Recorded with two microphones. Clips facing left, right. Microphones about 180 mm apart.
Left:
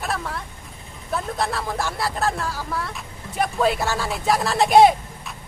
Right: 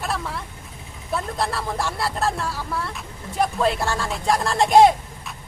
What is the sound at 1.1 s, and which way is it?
Speech, centre (ahead or behind).